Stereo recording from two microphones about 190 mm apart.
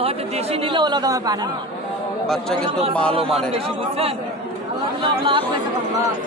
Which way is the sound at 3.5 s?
30° right (ahead or behind).